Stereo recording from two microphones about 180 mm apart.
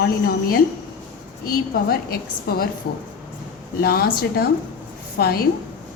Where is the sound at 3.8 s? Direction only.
60° left (ahead or behind).